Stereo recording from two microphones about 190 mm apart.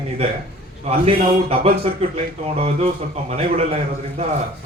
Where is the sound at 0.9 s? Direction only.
30° right (ahead or behind).